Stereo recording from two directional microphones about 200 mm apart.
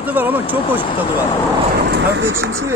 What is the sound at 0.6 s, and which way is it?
Speech, 25° left (ahead or behind).